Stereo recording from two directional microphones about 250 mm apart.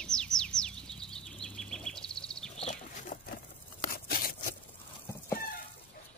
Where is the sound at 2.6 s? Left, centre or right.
Left.